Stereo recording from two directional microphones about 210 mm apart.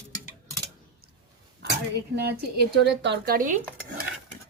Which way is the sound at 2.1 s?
50° right (ahead or behind).